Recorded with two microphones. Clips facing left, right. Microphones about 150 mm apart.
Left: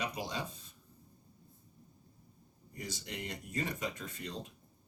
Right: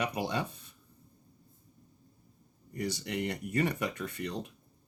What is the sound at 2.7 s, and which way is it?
Speech, 65° right (ahead or behind).